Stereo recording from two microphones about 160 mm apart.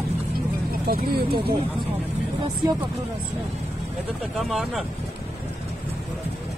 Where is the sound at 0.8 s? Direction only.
70° right (ahead or behind).